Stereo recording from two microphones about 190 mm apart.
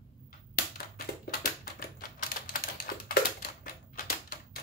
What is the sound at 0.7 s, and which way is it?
Typewriter, 50° left (ahead or behind).